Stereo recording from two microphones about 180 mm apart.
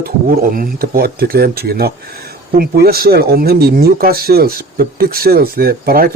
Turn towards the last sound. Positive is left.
turn(degrees=-55)  # may be behind; listen again after turning